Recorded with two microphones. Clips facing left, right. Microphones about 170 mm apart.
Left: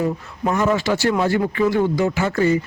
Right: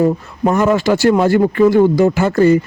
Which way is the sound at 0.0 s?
50° right (ahead or behind).